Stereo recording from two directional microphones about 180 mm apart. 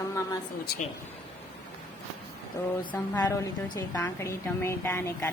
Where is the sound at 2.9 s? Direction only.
10° left (ahead or behind).